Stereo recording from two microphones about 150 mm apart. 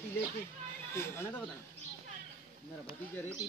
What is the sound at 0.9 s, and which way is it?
Speech, 15° left (ahead or behind).